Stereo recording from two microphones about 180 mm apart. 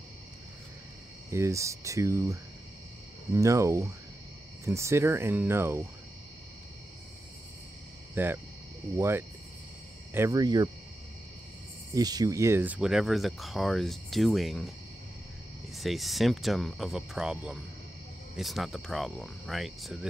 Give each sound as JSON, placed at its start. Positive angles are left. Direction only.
{"t": 1.3, "sound": "speech", "side_deg": -15}
{"t": 3.3, "sound": "speech", "side_deg": -15}
{"t": 8.1, "sound": "hum", "side_deg": -10}
{"t": 8.9, "sound": "speech", "side_deg": -15}
{"t": 11.9, "sound": "speech", "side_deg": -20}
{"t": 15.7, "sound": "speech", "side_deg": 0}